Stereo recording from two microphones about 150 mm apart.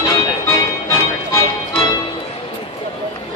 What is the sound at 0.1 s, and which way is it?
Music, 20° left (ahead or behind).